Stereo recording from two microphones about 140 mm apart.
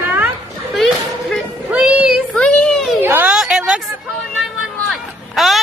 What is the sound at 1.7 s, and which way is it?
Child singing, 10° right (ahead or behind).